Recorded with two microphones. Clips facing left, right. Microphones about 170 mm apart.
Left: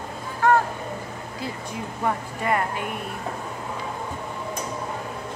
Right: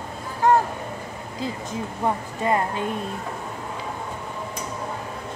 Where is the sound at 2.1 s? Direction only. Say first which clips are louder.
Right 1 dB; 25° right (ahead or behind).